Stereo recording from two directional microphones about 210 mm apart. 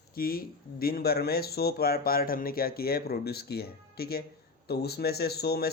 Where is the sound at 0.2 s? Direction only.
45° left (ahead or behind).